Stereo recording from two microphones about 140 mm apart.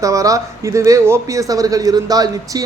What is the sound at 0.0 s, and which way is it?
A man's voice, 25° right (ahead or behind).